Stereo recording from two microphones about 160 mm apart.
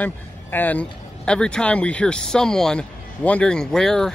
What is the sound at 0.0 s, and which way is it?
Speech, 10° left (ahead or behind).